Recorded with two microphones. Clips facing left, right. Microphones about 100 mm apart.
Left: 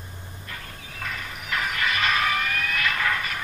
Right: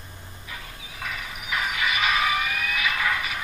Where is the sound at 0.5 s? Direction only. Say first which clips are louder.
Even; 5° right (ahead or behind).